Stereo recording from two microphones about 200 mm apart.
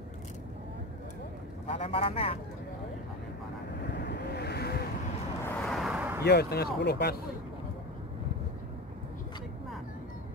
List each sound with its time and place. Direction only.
1.7 s a man's voice: 30° left (ahead or behind)
3.9 s vehicle: 60° left (ahead or behind)
5.4 s vehicle: 5° left (ahead or behind)
6.2 s speech: 55° left (ahead or behind)